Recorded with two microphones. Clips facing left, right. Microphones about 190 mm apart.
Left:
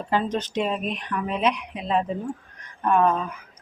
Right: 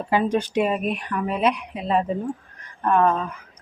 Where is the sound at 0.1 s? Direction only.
10° right (ahead or behind).